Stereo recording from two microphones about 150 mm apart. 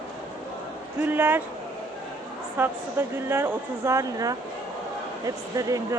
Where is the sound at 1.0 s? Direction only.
15° right (ahead or behind).